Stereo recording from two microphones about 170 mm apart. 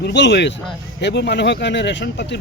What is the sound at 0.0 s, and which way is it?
Speech, 85° left.